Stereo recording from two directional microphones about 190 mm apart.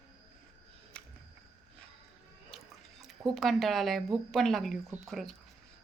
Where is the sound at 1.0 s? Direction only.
5° left (ahead or behind).